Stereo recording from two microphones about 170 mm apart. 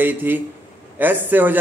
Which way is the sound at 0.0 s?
10° right (ahead or behind).